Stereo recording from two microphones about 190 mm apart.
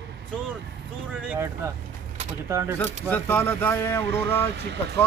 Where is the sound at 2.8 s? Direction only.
10° left (ahead or behind).